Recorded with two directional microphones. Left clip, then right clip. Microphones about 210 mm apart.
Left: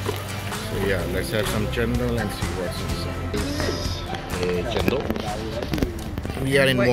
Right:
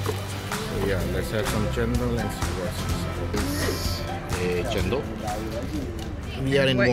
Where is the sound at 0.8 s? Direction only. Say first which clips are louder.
Left 4 dB; centre (ahead or behind).